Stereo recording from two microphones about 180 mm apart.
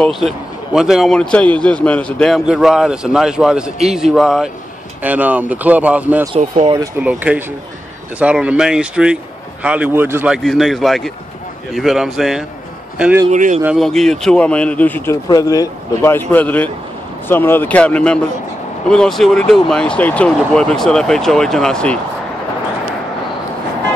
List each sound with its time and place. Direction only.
0.0 s a man's voice: centre (ahead or behind)
13.3 s speech: 40° right (ahead or behind)
13.7 s a man's voice: centre (ahead or behind)